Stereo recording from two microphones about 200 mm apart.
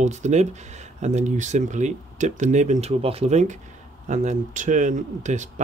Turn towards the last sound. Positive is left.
turn(degrees=-35)  # may be behind; listen again after turning